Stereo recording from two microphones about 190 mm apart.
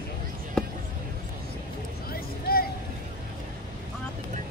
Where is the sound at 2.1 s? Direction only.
50° left (ahead or behind).